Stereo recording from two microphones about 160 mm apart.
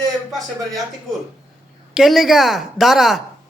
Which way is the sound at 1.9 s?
Centre (ahead or behind).